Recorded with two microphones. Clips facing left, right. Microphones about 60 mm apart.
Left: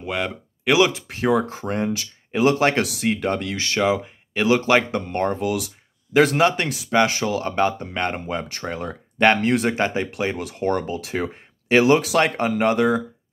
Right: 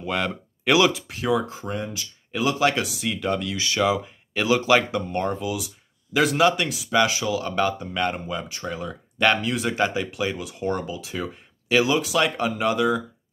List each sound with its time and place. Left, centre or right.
0.0 s speech: centre
0.9 s speech: left
1.4 s speech: left
2.6 s speech: left
3.8 s speech: left
4.5 s speech: left
5.4 s speech: left
6.1 s speech: left
7.5 s speech: left
9.8 s speech: left
10.3 s speech: left
12.4 s speech: left